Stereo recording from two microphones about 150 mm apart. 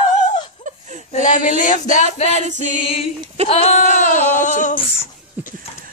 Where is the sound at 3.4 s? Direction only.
45° left (ahead or behind).